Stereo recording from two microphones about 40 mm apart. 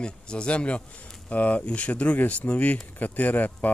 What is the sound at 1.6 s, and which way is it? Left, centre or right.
Speech, left.